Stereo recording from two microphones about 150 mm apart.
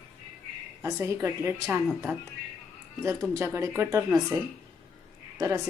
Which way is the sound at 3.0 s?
20° right (ahead or behind).